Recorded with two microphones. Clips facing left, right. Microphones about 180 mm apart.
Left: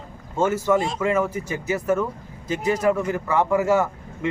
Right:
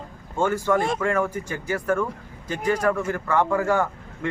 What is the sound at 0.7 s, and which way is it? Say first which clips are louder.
Speech: even; 55° right (ahead or behind).